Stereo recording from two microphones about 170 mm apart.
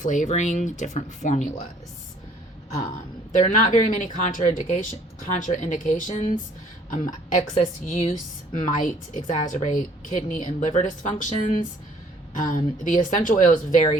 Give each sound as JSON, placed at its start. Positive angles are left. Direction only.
{"t": 0.0, "sound": "speech", "side_deg": 45}
{"t": 3.3, "sound": "speech", "side_deg": 45}